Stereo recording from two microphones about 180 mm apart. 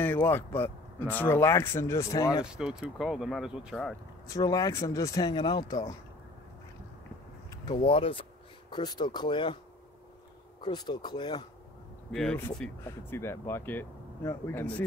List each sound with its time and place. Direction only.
0.0 s speech: 10° left (ahead or behind)
2.4 s speech: 5° right (ahead or behind)
4.3 s speech: 20° left (ahead or behind)
7.6 s speech: 25° left (ahead or behind)
10.6 s speech: 25° left (ahead or behind)
12.1 s speech: centre (ahead or behind)